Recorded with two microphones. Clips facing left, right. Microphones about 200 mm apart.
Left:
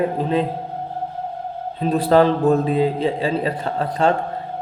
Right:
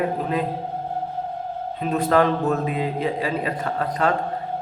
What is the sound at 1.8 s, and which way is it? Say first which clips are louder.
A man's voice: left 4 dB; 35° left (ahead or behind).